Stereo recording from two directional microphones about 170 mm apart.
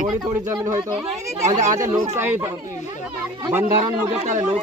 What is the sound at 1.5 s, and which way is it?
Speech, 45° right (ahead or behind).